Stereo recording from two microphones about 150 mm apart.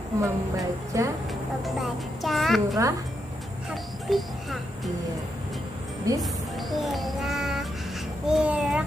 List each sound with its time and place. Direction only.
0.2 s speech: 20° right (ahead or behind)
1.6 s a woman's voice: centre (ahead or behind)
6.1 s speech: 20° right (ahead or behind)
6.7 s music: centre (ahead or behind)
8.3 s a sound: 5° right (ahead or behind)